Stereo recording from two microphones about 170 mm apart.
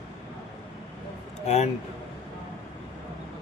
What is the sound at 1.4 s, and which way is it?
Speech, 40° left (ahead or behind).